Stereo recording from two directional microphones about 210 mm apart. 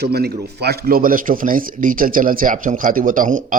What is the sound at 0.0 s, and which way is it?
Speech, 50° right (ahead or behind).